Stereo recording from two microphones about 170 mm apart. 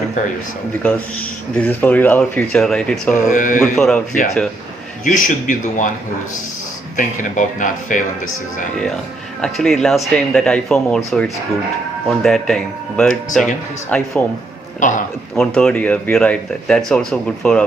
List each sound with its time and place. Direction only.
0.8 s speech: 10° left (ahead or behind)
3.2 s speech: 50° left (ahead or behind)
3.8 s speech: centre (ahead or behind)
5.0 s speech: 50° left (ahead or behind)
6.9 s speech: 50° left (ahead or behind)
9.4 s speech: centre (ahead or behind)
14.8 s a man's voice: 50° left (ahead or behind)
15.4 s speech: 5° left (ahead or behind)